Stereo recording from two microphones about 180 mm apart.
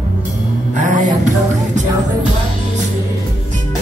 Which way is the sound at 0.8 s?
45° right (ahead or behind).